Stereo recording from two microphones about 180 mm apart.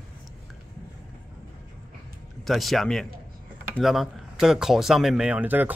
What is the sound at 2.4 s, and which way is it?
Speech, centre (ahead or behind).